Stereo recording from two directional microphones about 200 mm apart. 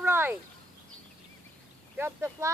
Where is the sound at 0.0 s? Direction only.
10° right (ahead or behind).